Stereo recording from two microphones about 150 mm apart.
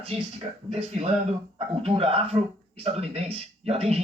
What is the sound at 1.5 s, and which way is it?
Speech, 40° right (ahead or behind).